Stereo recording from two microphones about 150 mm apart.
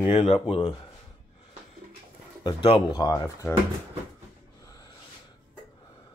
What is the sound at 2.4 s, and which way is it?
Speech, 35° left (ahead or behind).